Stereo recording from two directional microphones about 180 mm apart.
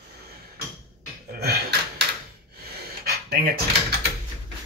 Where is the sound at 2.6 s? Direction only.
60° right (ahead or behind).